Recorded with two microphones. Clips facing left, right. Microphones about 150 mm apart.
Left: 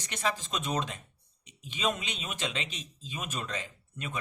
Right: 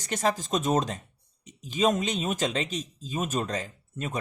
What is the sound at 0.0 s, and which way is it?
A man's voice, 40° right (ahead or behind).